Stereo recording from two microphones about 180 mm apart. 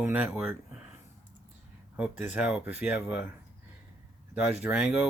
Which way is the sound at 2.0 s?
5° right (ahead or behind).